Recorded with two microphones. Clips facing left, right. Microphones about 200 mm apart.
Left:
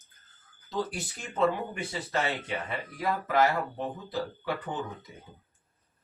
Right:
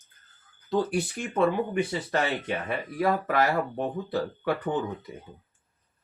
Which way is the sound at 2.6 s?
55° right (ahead or behind).